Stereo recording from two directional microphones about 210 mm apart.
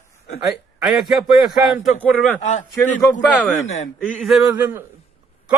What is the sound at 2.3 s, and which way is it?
Speech, 35° left (ahead or behind).